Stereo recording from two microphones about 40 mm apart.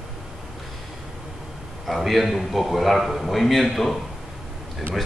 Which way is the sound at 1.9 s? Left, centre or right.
Centre.